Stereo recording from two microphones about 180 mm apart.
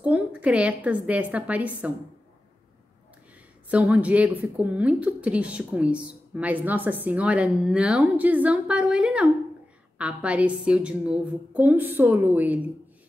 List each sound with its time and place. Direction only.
0.0 s a woman's voice: 5° right (ahead or behind)
3.7 s a woman's voice: 10° right (ahead or behind)